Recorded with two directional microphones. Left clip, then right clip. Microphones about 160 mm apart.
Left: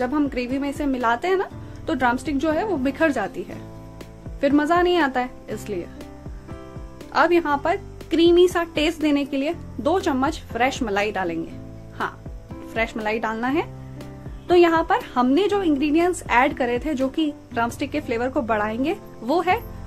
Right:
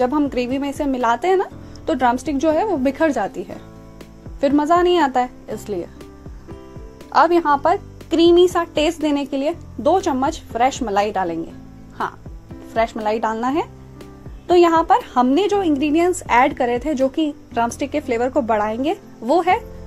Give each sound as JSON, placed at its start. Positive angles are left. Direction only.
{"t": 0.0, "sound": "a woman's voice", "side_deg": -25}
{"t": 7.1, "sound": "a woman's voice", "side_deg": -15}
{"t": 13.0, "sound": "a woman's voice", "side_deg": -15}